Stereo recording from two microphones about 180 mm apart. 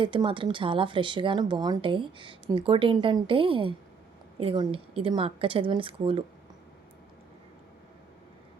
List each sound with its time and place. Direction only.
0.0 s speech: 30° right (ahead or behind)